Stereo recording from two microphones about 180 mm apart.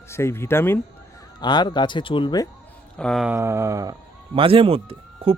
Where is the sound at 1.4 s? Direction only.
25° left (ahead or behind).